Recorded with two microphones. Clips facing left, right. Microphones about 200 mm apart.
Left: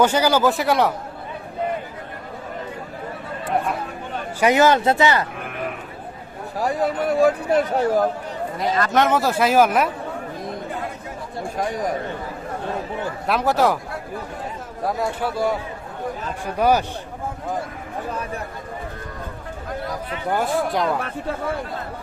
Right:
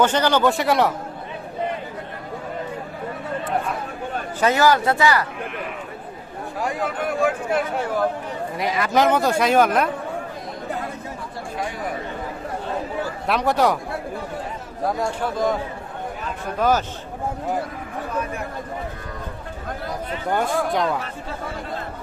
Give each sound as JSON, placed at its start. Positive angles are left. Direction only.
{"t": 0.0, "sound": "speech", "side_deg": 10}
{"t": 4.4, "sound": "speech", "side_deg": 15}
{"t": 6.6, "sound": "speech", "side_deg": 35}
{"t": 8.5, "sound": "speech", "side_deg": -5}
{"t": 11.5, "sound": "speech", "side_deg": 45}
{"t": 13.2, "sound": "speech", "side_deg": 0}
{"t": 14.8, "sound": "speech", "side_deg": 5}
{"t": 16.6, "sound": "speech", "side_deg": 15}
{"t": 20.3, "sound": "speech", "side_deg": 0}